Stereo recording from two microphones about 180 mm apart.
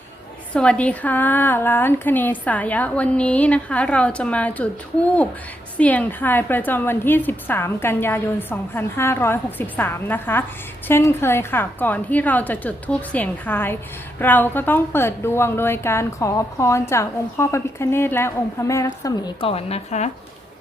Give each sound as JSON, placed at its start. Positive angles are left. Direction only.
{"t": 0.5, "sound": "a woman's voice", "side_deg": 5}
{"t": 19.0, "sound": "a woman's voice", "side_deg": 25}